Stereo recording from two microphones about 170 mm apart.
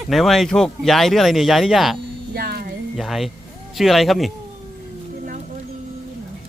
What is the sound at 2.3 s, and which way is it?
Music, 65° right (ahead or behind).